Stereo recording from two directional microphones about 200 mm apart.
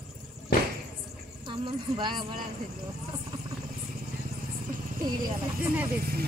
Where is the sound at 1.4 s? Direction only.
25° right (ahead or behind).